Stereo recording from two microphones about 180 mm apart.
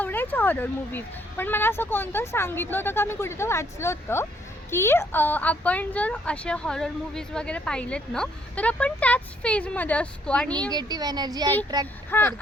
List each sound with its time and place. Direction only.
0.0 s speech: 10° left (ahead or behind)
10.7 s a woman's voice: 20° right (ahead or behind)
12.1 s speech: 10° left (ahead or behind)